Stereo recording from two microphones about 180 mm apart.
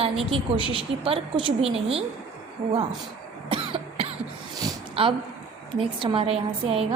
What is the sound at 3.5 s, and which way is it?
Cough, 30° right (ahead or behind).